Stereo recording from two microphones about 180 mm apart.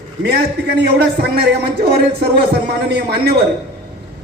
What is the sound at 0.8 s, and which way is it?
A man's voice, 65° right (ahead or behind).